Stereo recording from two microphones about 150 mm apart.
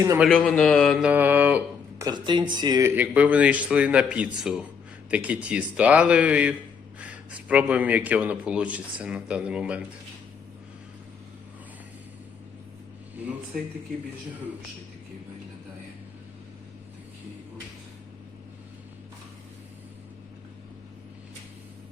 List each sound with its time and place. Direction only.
0.3 s a man's voice: 5° left (ahead or behind); by 1.6 s 10° right (ahead or behind)
2.0 s speech: 30° right (ahead or behind)
2.9 s a man's voice: 10° right (ahead or behind)